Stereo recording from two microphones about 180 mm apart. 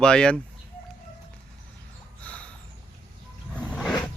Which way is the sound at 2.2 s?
5° left (ahead or behind).